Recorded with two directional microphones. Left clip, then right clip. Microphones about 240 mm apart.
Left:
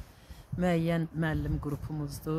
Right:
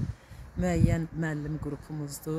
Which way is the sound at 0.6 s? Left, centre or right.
Left.